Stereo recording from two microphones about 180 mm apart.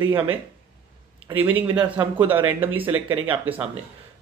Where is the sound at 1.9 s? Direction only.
10° right (ahead or behind).